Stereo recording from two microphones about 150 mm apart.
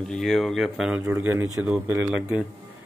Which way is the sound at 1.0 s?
15° right (ahead or behind).